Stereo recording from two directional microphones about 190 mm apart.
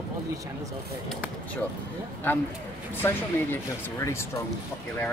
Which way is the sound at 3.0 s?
15° left (ahead or behind).